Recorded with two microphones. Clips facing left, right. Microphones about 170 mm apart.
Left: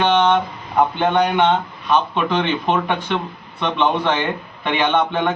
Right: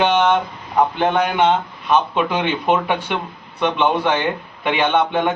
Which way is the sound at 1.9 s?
10° right (ahead or behind).